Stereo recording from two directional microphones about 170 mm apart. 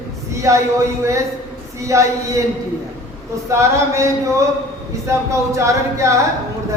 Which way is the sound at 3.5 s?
15° right (ahead or behind).